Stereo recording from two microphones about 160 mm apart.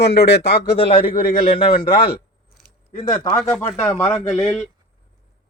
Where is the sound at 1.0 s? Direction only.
65° left (ahead or behind).